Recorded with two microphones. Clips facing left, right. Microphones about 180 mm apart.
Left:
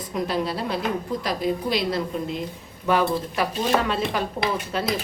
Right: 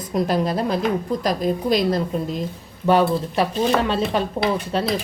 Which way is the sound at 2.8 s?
30° right (ahead or behind).